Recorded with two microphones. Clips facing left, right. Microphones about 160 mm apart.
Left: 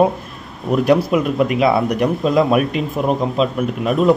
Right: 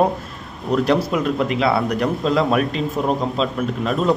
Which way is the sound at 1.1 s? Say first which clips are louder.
Left 3 dB; 15° left (ahead or behind).